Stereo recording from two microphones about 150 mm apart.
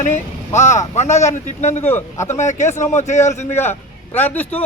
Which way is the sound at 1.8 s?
15° left (ahead or behind).